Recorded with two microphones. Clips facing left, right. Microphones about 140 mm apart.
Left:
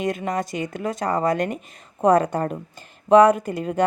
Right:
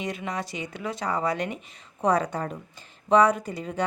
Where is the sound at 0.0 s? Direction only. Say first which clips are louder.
Left 7 dB; 50° left (ahead or behind).